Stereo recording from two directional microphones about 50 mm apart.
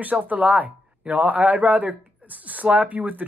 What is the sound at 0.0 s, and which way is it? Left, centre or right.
Speech, right.